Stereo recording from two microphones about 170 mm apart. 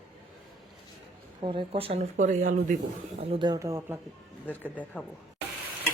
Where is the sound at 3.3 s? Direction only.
25° right (ahead or behind).